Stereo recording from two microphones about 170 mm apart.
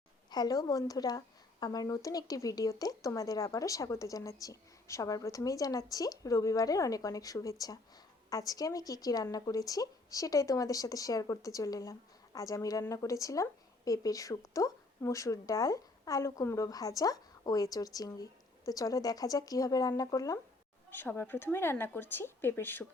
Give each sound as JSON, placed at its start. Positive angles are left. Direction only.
{"t": 0.3, "sound": "a woman's voice", "side_deg": 25}